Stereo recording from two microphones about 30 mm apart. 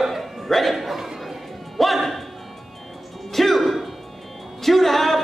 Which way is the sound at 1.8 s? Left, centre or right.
Centre.